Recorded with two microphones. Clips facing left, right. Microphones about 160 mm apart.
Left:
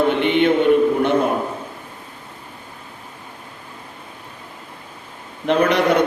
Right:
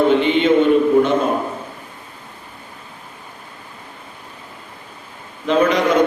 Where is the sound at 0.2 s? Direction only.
65° left (ahead or behind).